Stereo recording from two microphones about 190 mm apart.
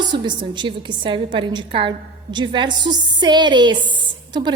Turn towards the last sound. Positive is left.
turn(degrees=-25)  # may be behind; listen again after turning